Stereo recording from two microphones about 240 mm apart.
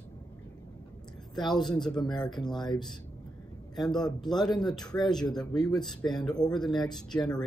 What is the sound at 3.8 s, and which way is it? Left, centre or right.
Speech, centre.